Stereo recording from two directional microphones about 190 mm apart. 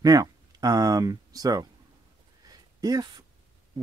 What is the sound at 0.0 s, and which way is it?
Speech, 20° right (ahead or behind).